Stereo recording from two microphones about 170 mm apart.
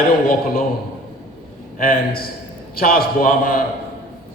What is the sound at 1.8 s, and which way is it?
A man's voice, 60° left (ahead or behind).